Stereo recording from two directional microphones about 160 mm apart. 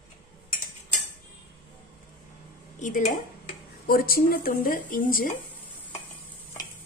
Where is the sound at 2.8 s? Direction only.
55° left (ahead or behind).